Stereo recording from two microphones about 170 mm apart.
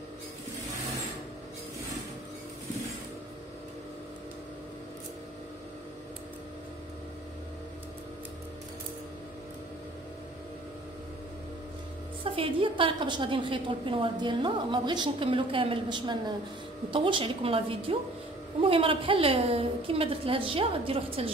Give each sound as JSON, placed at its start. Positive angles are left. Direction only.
{"t": 12.3, "sound": "a woman's voice", "side_deg": -30}